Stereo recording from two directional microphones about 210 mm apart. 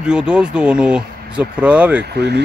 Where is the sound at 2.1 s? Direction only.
50° right (ahead or behind).